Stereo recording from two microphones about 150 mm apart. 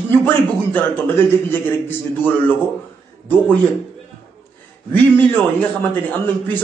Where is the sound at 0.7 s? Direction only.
15° left (ahead or behind).